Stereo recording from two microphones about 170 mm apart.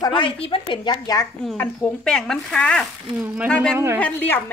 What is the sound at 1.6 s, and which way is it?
Speech, 5° left (ahead or behind).